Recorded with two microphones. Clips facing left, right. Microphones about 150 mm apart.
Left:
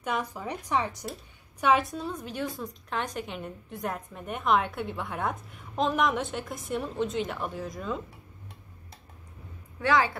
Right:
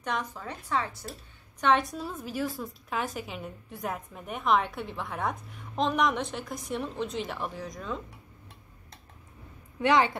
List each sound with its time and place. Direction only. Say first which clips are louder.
0.0 s a woman's voice: left 2 dB; 10° left (ahead or behind)
1.6 s a woman's voice: left 1 dB; 5° left (ahead or behind)
9.8 s a woman's voice: right 1 dB; 20° right (ahead or behind)